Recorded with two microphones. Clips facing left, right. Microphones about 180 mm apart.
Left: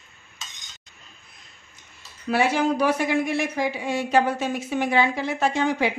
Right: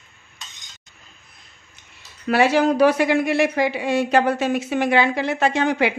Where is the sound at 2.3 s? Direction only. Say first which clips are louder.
Right 4 dB; 80° right.